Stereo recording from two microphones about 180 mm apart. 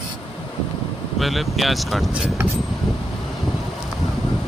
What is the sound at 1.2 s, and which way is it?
Speech, centre (ahead or behind).